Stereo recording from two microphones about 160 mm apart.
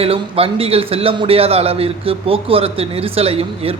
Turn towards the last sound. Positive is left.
turn(degrees=-35)  # may be behind; listen again after turning